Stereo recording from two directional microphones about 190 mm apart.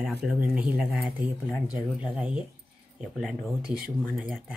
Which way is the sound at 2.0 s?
5° right (ahead or behind).